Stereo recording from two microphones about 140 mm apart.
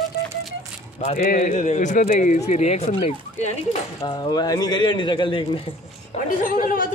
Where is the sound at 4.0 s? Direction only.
30° left (ahead or behind).